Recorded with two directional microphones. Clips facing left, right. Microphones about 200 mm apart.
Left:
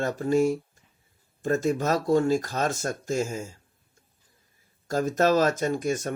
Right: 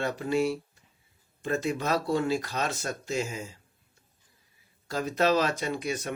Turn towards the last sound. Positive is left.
turn(degrees=45)  # may be behind; listen again after turning